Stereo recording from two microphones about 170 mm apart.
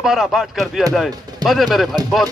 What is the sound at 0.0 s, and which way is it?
Speech, centre (ahead or behind).